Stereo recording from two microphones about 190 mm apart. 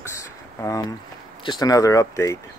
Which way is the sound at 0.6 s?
15° left (ahead or behind).